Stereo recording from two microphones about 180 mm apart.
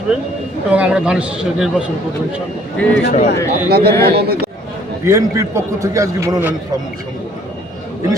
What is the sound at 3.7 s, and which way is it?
Speech, 60° right (ahead or behind).